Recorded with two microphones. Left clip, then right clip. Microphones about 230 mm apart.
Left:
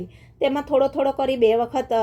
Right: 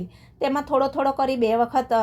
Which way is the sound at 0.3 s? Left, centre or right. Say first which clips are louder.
Left 2 dB; right.